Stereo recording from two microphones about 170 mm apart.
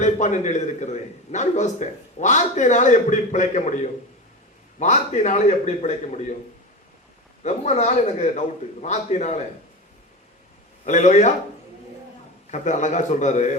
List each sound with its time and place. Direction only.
0.0 s a man's voice: 45° left (ahead or behind)
4.8 s a man's voice: 40° left (ahead or behind)
7.4 s a man's voice: 40° left (ahead or behind)
10.8 s a man's voice: 45° left (ahead or behind)
12.5 s a man's voice: 45° left (ahead or behind)